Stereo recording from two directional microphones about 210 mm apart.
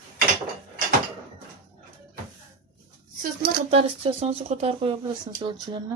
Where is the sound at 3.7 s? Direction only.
30° right (ahead or behind).